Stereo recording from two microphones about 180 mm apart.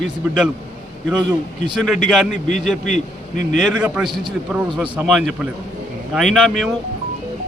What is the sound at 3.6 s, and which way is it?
A man's voice, 5° right (ahead or behind).